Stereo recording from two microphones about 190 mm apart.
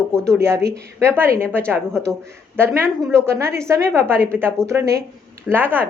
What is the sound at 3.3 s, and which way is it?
A woman's voice, 15° right (ahead or behind).